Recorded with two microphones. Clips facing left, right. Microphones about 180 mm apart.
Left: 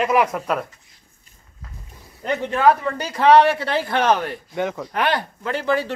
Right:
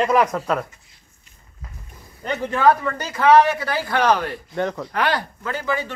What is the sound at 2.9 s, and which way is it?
A woman's voice, 30° left (ahead or behind).